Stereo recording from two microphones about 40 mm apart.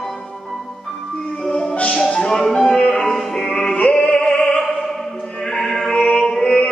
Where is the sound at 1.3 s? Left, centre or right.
Centre.